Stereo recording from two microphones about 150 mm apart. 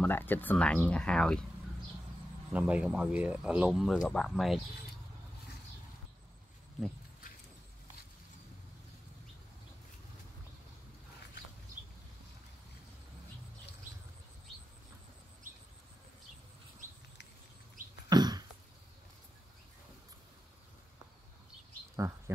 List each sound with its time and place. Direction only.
0.0 s speech: 15° left (ahead or behind)
2.5 s speech: 10° right (ahead or behind)
18.1 s a sound: 30° right (ahead or behind)